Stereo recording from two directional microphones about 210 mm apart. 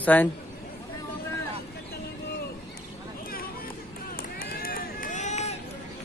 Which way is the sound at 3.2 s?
45° left (ahead or behind).